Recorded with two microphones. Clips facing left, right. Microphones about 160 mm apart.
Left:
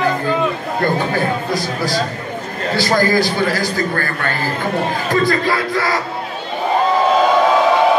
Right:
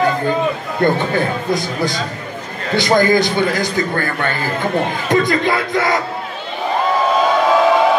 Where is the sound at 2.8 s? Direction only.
20° right (ahead or behind).